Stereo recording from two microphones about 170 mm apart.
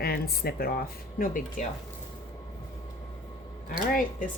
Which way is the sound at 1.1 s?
55° left (ahead or behind).